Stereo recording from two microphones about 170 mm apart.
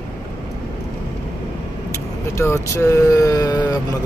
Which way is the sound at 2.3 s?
15° left (ahead or behind).